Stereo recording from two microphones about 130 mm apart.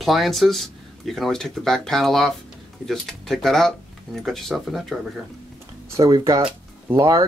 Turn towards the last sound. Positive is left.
turn(degrees=-30)  # may be behind; listen again after turning